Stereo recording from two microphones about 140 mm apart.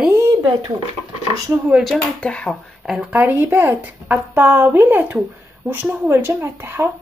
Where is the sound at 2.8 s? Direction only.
5° right (ahead or behind).